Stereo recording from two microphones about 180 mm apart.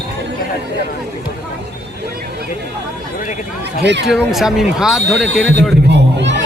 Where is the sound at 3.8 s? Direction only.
75° right (ahead or behind).